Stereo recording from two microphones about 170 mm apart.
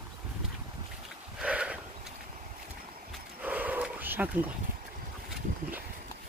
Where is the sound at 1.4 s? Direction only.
5° right (ahead or behind).